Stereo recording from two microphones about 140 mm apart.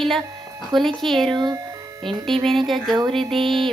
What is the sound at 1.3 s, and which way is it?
Speech, 30° right (ahead or behind).